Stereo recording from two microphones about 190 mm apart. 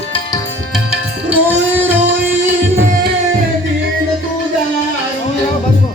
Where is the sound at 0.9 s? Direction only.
10° right (ahead or behind).